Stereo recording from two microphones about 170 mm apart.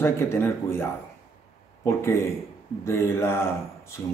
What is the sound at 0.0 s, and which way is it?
Speech, 15° left (ahead or behind).